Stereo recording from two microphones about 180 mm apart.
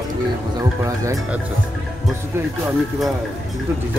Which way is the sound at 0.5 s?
20° right (ahead or behind).